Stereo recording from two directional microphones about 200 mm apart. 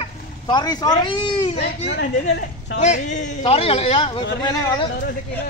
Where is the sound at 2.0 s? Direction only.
55° left (ahead or behind).